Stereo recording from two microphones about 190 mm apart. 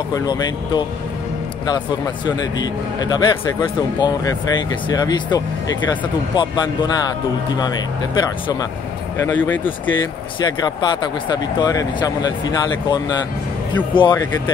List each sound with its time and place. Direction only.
0.1 s speech: 20° left (ahead or behind)
2.2 s speech: 20° left (ahead or behind)
9.2 s speech: 10° left (ahead or behind)
10.4 s speech: 20° left (ahead or behind)
13.9 s speech: 25° left (ahead or behind)